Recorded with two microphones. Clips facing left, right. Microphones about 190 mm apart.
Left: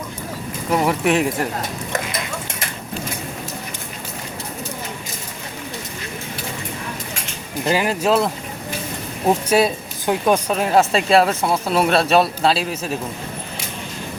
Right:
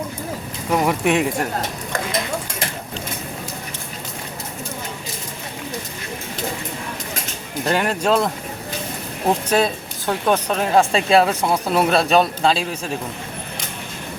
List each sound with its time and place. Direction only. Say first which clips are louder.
0.7 s speech: even; centre (ahead or behind)
7.6 s speech: left 1 dB; 5° left (ahead or behind)
9.5 s speech: left 2 dB; 10° left (ahead or behind)